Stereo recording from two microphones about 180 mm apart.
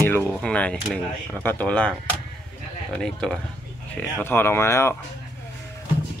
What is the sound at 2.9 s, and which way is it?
Speech, 5° left (ahead or behind).